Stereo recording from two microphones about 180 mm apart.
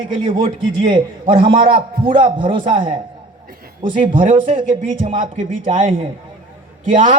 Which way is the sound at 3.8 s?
45° right (ahead or behind).